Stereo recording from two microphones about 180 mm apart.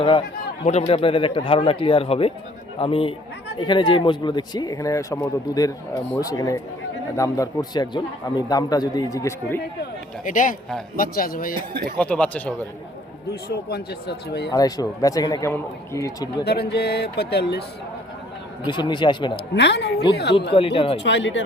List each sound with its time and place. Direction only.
0.0 s a man's voice: 30° left (ahead or behind)
10.2 s speech: 45° left (ahead or behind)
11.7 s speech: 60° right (ahead or behind)
11.9 s speech: 5° left (ahead or behind)
13.5 s speech: 60° left (ahead or behind)
14.5 s a man's voice: 20° left (ahead or behind)
16.4 s speech: 60° left (ahead or behind)
18.6 s a man's voice: 25° left (ahead or behind)
19.5 s a woman's voice: 70° left (ahead or behind)
20.5 s speech: 30° left (ahead or behind)
21.0 s speech: 85° left